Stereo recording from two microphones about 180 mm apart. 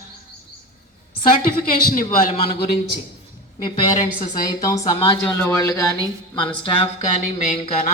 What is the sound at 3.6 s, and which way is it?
Speech, 25° left (ahead or behind).